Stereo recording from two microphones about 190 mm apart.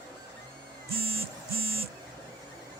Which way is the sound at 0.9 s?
30° right (ahead or behind).